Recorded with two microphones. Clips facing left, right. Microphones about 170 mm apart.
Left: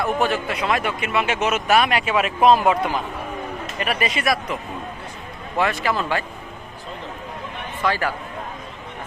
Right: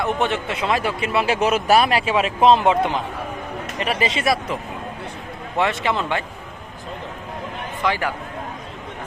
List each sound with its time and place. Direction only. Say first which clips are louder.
0.0 s speech: even; 20° right (ahead or behind)
7.8 s a man's voice: even; 15° right (ahead or behind)